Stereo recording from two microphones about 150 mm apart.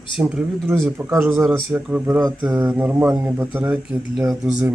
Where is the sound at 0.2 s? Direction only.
5° right (ahead or behind).